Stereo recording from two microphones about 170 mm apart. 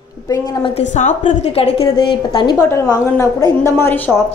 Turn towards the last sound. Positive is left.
turn(degrees=10)  # may be behind; listen again after turning